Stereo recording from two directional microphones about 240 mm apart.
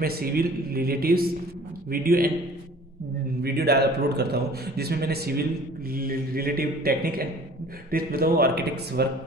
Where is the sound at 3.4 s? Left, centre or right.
Right.